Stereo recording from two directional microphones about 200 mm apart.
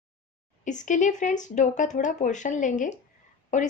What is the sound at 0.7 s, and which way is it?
A woman's voice, 40° left (ahead or behind).